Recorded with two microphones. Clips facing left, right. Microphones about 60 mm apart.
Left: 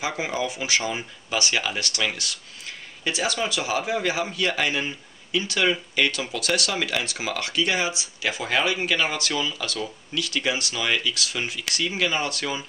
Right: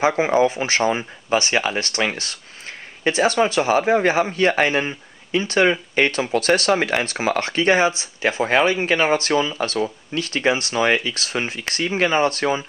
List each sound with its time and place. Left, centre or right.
0.0 s speech: right